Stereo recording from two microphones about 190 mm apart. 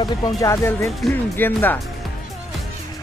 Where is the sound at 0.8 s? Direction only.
Centre (ahead or behind).